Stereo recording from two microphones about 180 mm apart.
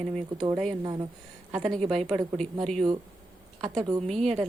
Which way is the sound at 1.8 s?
35° right (ahead or behind).